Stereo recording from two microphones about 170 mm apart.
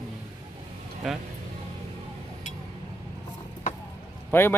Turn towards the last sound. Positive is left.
turn(degrees=15)  # may be behind; listen again after turning